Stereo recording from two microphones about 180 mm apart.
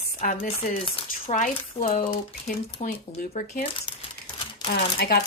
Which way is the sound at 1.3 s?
45° left (ahead or behind).